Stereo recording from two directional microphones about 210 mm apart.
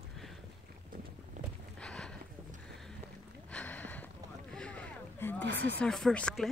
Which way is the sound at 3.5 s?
10° left (ahead or behind).